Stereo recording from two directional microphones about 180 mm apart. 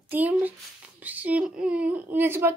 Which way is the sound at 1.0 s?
10° right (ahead or behind).